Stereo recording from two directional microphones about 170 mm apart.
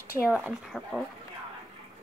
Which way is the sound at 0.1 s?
5° right (ahead or behind).